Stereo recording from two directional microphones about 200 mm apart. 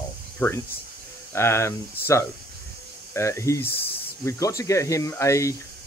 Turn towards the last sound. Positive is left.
turn(degrees=15)  # may be behind; listen again after turning